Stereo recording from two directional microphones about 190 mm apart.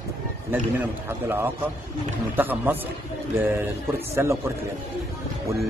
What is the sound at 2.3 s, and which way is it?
Speech, 10° right (ahead or behind).